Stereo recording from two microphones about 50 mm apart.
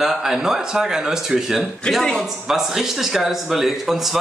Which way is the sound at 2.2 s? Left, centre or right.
Centre.